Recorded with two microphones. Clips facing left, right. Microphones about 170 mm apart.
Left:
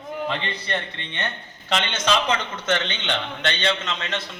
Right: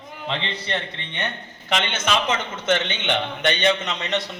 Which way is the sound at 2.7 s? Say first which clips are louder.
Right 3 dB; 20° right (ahead or behind).